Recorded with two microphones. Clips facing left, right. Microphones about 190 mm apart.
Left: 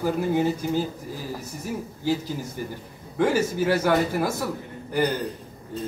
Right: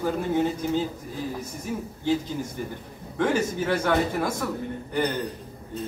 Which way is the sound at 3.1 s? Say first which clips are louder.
Left 2 dB; 10° left (ahead or behind).